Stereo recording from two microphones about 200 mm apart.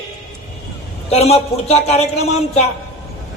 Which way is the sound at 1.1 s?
30° left (ahead or behind).